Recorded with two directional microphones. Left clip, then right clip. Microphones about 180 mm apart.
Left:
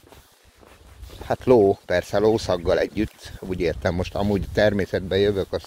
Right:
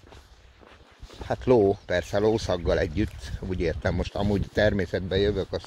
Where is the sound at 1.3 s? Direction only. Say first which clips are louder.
Left 4 dB; 45° left (ahead or behind).